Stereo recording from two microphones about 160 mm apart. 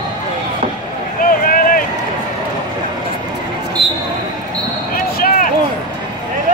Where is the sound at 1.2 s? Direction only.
60° left (ahead or behind).